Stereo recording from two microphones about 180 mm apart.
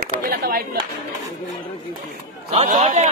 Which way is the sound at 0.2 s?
55° right (ahead or behind).